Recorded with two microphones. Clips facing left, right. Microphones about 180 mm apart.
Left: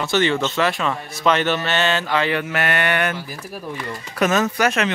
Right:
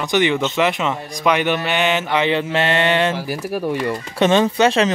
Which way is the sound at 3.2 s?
75° right (ahead or behind).